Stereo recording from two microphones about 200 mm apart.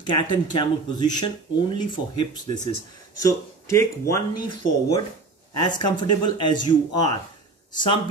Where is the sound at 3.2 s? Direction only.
15° left (ahead or behind).